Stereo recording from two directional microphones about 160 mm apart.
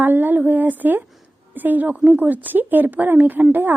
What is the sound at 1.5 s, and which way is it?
A woman's voice, 10° right (ahead or behind).